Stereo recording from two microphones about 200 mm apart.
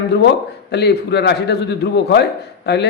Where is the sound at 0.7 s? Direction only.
55° left (ahead or behind).